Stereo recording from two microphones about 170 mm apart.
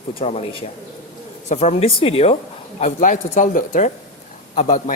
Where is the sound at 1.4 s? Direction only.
40° left (ahead or behind).